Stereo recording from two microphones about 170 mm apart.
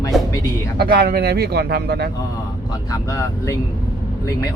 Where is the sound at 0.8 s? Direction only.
65° right (ahead or behind).